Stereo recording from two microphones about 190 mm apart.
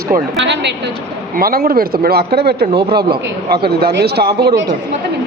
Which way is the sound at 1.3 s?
50° right (ahead or behind).